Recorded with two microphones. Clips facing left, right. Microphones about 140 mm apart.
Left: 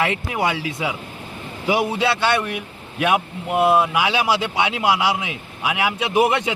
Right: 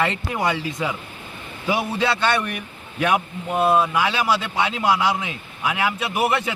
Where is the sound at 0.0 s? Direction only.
10° left (ahead or behind).